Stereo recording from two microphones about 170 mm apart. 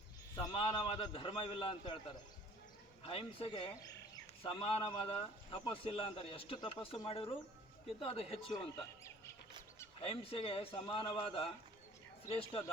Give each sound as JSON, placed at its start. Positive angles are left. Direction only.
{"t": 0.3, "sound": "speech", "side_deg": 30}
{"t": 3.0, "sound": "speech", "side_deg": 35}
{"t": 10.0, "sound": "speech", "side_deg": 35}